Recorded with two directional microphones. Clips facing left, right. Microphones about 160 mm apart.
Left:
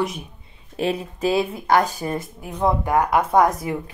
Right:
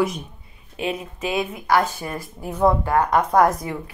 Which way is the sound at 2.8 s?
15° left (ahead or behind).